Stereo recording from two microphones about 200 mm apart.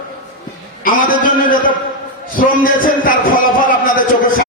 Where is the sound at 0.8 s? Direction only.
45° left (ahead or behind).